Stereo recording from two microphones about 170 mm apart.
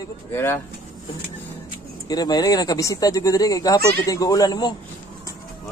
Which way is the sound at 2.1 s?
25° left (ahead or behind).